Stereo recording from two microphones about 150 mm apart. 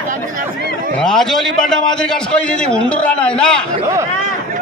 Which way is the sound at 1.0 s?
Centre (ahead or behind).